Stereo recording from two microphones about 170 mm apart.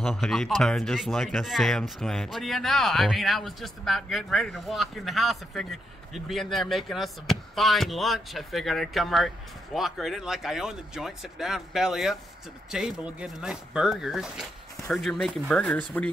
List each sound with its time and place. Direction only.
0.0 s speech: centre (ahead or behind)